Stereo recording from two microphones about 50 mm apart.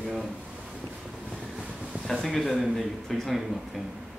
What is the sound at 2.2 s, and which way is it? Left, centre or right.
Speech, centre.